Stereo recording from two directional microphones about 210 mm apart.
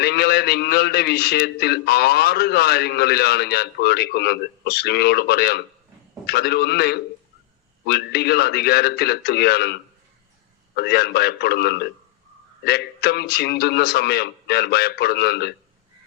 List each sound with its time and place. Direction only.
0.0 s a man's voice: 50° left (ahead or behind)
10.8 s a man's voice: 50° left (ahead or behind)